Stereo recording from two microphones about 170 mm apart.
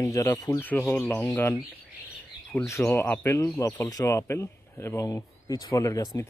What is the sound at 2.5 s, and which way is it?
Speech, 10° left (ahead or behind).